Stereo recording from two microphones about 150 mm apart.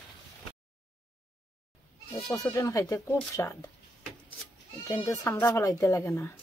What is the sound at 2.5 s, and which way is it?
Speech, 20° left (ahead or behind).